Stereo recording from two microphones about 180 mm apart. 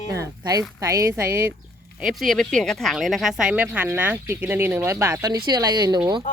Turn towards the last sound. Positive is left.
turn(degrees=-20)  # may be behind; listen again after turning